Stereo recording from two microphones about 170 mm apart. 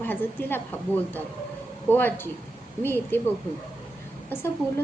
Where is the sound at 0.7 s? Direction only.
10° left (ahead or behind).